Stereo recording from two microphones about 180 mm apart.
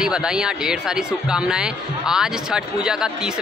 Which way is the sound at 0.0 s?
5° right (ahead or behind).